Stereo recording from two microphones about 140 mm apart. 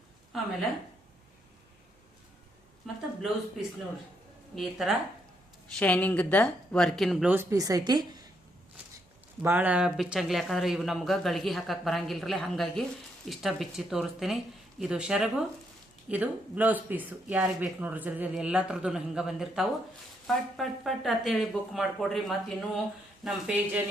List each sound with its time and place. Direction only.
2.8 s a sound: centre (ahead or behind)
4.5 s speech: centre (ahead or behind)
5.8 s speech: 10° left (ahead or behind)
7.5 s a woman's voice: 25° right (ahead or behind)
9.4 s speech: 15° right (ahead or behind)
23.2 s speech: 10° right (ahead or behind)